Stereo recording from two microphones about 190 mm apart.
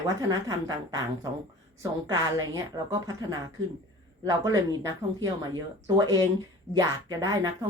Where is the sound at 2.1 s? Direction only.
15° right (ahead or behind).